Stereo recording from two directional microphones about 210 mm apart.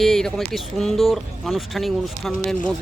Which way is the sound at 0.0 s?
Centre (ahead or behind).